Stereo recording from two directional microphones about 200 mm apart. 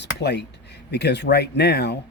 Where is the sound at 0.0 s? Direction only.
55° left (ahead or behind).